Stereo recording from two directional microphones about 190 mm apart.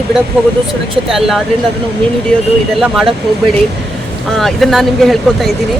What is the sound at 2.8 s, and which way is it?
Speech, centre (ahead or behind).